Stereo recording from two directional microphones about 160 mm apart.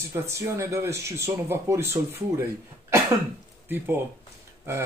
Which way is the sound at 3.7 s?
15° right (ahead or behind).